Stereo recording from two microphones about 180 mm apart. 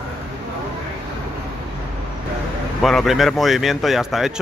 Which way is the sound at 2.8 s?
Centre (ahead or behind).